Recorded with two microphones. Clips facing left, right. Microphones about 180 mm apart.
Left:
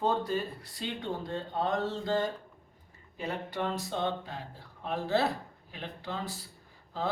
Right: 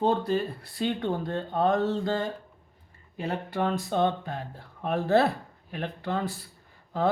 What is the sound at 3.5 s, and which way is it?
Speech, 55° right (ahead or behind).